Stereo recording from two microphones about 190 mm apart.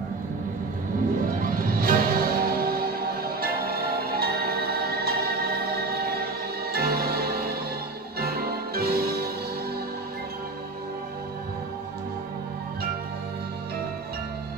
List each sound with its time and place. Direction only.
1.4 s music: 50° right (ahead or behind)